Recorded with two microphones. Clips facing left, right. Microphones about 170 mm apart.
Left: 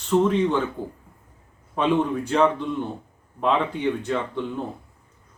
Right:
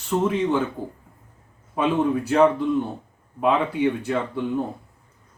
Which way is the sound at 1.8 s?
5° right (ahead or behind).